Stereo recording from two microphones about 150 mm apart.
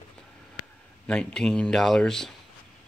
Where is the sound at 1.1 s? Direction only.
5° left (ahead or behind).